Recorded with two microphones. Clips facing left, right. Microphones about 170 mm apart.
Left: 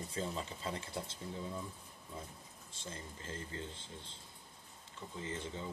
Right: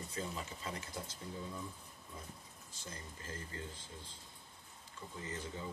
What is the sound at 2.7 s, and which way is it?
Speech, 25° left (ahead or behind).